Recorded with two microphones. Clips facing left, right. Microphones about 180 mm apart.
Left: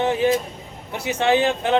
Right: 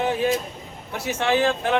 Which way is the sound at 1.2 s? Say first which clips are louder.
Left 2 dB; 20° left (ahead or behind).